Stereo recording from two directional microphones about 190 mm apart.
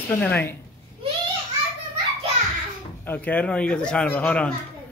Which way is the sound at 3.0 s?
10° left (ahead or behind).